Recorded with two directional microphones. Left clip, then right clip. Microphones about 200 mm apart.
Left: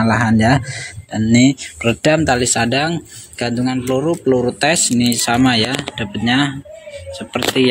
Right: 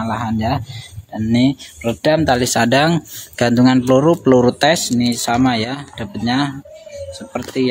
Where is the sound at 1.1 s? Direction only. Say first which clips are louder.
Left 3 dB; 5° left (ahead or behind); by 4.6 s 20° right (ahead or behind).